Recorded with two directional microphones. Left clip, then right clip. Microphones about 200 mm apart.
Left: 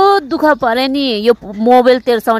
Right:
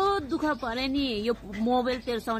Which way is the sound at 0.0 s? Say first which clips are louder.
Left 16 dB; 50° left (ahead or behind).